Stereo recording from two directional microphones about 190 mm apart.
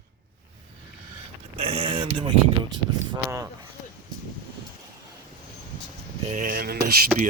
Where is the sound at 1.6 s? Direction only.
30° right (ahead or behind).